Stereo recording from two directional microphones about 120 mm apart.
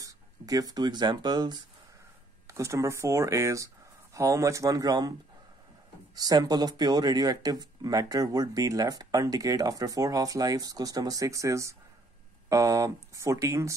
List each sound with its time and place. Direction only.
0.0 s speech: 30° right (ahead or behind)
2.4 s speech: 25° right (ahead or behind)
6.1 s speech: 35° right (ahead or behind)